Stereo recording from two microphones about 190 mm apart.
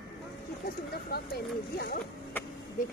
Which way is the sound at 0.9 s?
55° left (ahead or behind).